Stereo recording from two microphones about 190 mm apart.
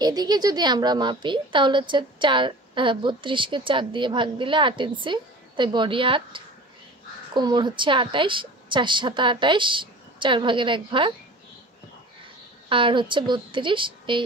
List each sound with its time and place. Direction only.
0.0 s a woman's voice: 20° right (ahead or behind)
12.6 s a woman's voice: 25° right (ahead or behind)